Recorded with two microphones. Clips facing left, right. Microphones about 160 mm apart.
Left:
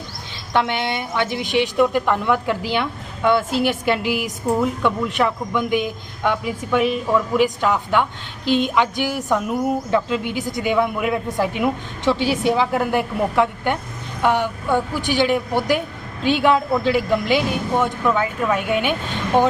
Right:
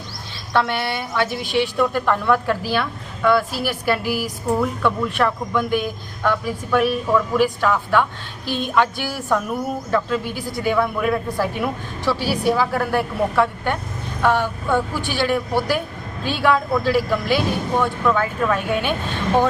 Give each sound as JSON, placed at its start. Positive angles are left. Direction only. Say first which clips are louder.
{"t": 0.5, "sound": "a woman's voice", "louder": "even", "side_deg": 20}